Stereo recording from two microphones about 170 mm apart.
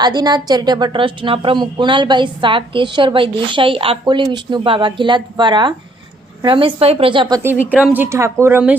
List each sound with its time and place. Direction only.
0.0 s speech: 25° right (ahead or behind)
7.7 s speech: 5° right (ahead or behind)